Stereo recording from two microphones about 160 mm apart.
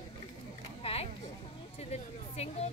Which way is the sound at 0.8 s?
40° left (ahead or behind).